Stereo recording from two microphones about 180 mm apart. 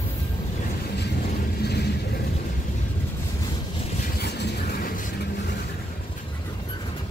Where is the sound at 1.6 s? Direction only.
65° left (ahead or behind).